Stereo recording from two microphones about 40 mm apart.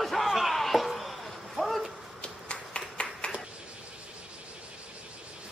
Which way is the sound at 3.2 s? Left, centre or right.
Left.